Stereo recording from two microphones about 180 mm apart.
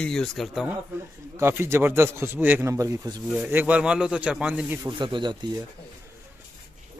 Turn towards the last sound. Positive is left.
turn(degrees=-25)  # may be behind; listen again after turning